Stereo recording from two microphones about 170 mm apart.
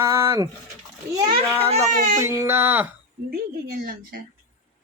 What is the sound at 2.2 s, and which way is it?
Speech, 15° right (ahead or behind).